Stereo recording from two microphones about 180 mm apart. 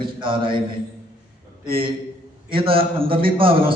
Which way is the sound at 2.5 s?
30° right (ahead or behind).